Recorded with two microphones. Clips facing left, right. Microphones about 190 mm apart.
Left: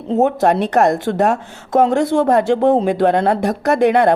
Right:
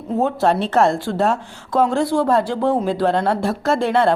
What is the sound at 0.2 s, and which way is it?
A woman's voice, 20° left (ahead or behind).